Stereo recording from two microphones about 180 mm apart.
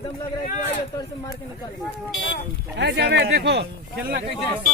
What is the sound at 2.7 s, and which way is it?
Speech, 70° right (ahead or behind).